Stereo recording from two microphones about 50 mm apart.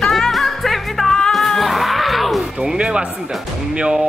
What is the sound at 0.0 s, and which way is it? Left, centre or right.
Music, centre.